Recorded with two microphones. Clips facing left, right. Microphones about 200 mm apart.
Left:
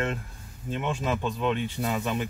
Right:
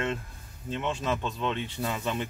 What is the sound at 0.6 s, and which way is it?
Speech, 10° left (ahead or behind).